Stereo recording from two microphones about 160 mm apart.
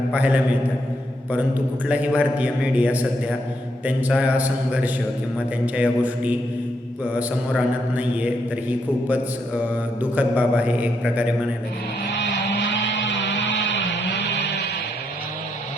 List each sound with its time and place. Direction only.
0.1 s a man's voice: 10° right (ahead or behind)
10.0 s a man's voice: 10° right (ahead or behind)
13.2 s music: 90° left